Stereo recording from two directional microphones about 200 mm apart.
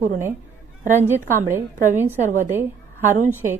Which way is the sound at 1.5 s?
10° right (ahead or behind).